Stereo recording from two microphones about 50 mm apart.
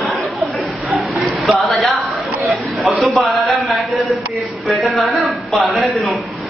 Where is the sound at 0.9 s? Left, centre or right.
Centre.